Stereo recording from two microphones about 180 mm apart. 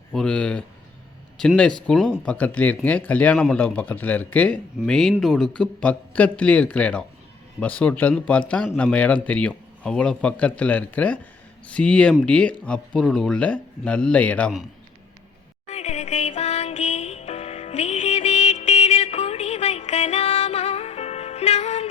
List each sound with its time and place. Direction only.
0.1 s a man's voice: 5° left (ahead or behind)
15.6 s music: 40° left (ahead or behind)